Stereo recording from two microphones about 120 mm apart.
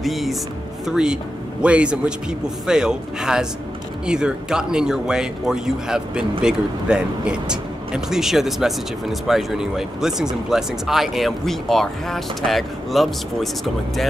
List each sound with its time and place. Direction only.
0.0 s speech: centre (ahead or behind)